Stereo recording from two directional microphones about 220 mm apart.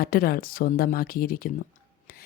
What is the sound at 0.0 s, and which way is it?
Speech, 40° left (ahead or behind).